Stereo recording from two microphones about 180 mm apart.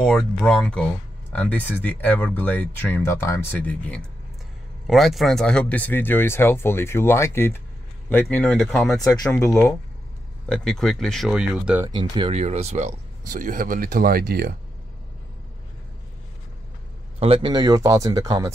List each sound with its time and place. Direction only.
0.0 s speech: 5° left (ahead or behind)
9.0 s speech: 15° left (ahead or behind)
10.5 s speech: 5° left (ahead or behind)
11.9 s speech: 25° right (ahead or behind)
12.4 s speech: 35° right (ahead or behind); by 14.5 s 55° right (ahead or behind)
17.2 s speech: 30° right (ahead or behind)